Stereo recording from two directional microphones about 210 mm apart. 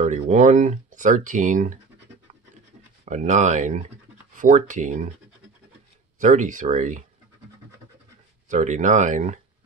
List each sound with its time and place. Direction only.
0.0 s speech: 35° right (ahead or behind)
3.1 s speech: 35° right (ahead or behind)
6.1 s speech: 35° right (ahead or behind)
8.5 s speech: 35° right (ahead or behind)